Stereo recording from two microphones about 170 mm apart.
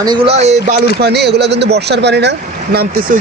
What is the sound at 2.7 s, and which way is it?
Speech, 60° right (ahead or behind).